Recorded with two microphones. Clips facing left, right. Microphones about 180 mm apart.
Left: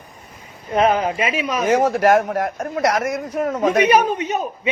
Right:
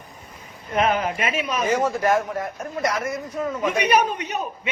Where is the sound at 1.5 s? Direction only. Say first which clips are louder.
Left 6 dB; 85° left.